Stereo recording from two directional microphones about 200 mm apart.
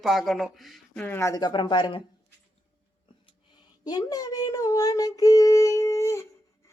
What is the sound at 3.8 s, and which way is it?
Child singing, 20° left (ahead or behind).